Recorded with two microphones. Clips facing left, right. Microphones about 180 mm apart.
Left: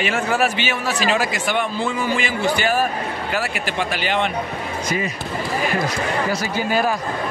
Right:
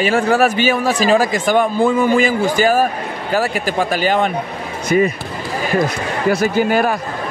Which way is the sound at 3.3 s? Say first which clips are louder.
Right 8 dB; 40° right (ahead or behind).